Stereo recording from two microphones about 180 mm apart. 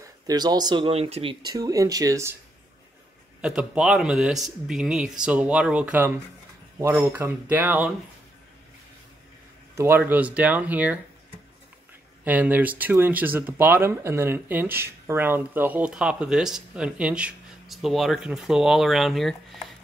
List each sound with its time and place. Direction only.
0.0 s speech: 20° right (ahead or behind)
3.3 s a man's voice: 5° right (ahead or behind)
9.8 s speech: 10° right (ahead or behind)
12.3 s speech: 10° right (ahead or behind)